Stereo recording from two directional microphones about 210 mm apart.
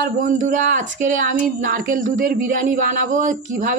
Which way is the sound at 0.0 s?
35° right (ahead or behind).